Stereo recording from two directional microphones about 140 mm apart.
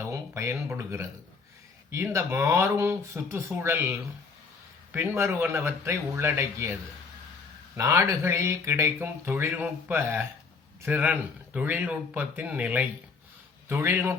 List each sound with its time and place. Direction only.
0.0 s a sound: 20° right (ahead or behind)
0.7 s speech: 20° right (ahead or behind)
7.8 s speech: 20° right (ahead or behind)